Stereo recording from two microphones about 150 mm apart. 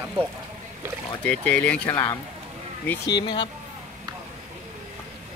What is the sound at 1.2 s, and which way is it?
Speech, 10° left (ahead or behind).